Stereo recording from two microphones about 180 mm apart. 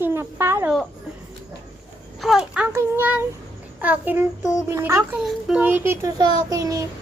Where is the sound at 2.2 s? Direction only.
5° right (ahead or behind).